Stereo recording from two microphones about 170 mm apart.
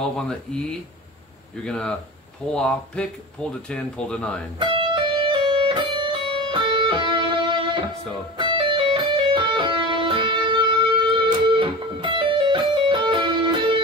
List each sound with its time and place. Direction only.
0.0 s speech: 5° left (ahead or behind)
4.6 s music: 30° right (ahead or behind)
8.4 s music: 30° right (ahead or behind)